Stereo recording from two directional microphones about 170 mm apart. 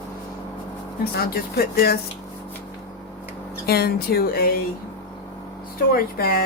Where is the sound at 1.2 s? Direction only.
65° left (ahead or behind).